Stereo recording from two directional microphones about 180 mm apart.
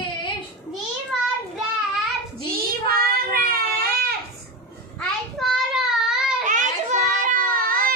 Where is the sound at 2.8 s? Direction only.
55° right (ahead or behind).